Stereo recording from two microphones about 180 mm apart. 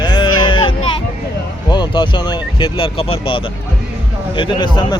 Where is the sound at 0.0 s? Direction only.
25° left (ahead or behind).